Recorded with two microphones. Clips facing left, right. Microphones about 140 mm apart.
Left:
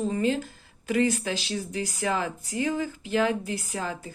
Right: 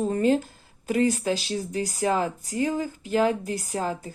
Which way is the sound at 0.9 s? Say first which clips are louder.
Right 2 dB; 35° right (ahead or behind).